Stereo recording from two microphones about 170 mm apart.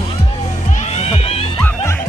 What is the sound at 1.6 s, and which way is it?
Music, 10° left (ahead or behind).